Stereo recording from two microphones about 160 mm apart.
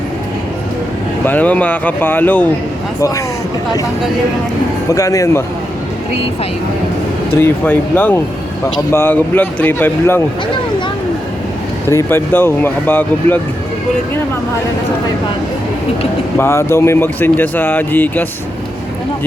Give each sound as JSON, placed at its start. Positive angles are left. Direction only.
{"t": 1.2, "sound": "speech", "side_deg": 10}
{"t": 4.9, "sound": "speech", "side_deg": 20}
{"t": 7.3, "sound": "speech", "side_deg": 15}
{"t": 11.9, "sound": "speech", "side_deg": 15}
{"t": 16.4, "sound": "speech", "side_deg": 15}